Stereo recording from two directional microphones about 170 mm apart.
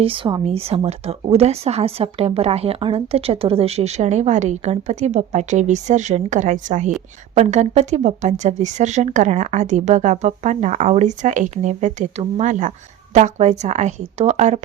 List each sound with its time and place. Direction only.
0.0 s a woman's voice: 30° right (ahead or behind)